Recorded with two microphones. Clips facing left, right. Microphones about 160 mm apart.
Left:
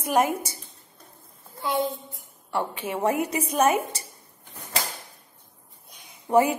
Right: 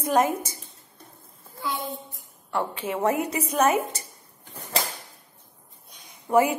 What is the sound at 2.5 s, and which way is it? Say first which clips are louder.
A woman's voice: even; 10° left (ahead or behind).